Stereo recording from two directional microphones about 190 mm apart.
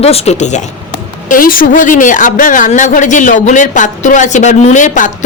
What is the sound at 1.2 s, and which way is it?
A woman's voice, 45° left (ahead or behind).